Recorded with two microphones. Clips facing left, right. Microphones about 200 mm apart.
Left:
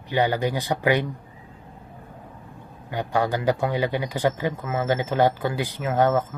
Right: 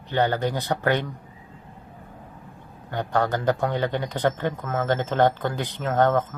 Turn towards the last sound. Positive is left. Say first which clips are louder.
# even
turn(degrees=10)  # may be behind; listen again after turning